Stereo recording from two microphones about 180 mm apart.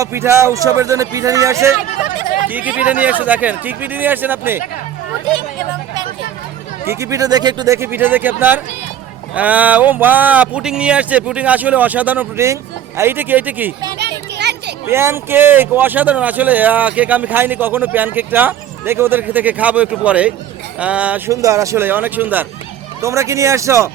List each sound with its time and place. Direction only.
0.0 s speech: 15° right (ahead or behind)
6.8 s speech: 15° right (ahead or behind)
14.0 s children playing: 70° right (ahead or behind)
14.8 s speech: 15° right (ahead or behind)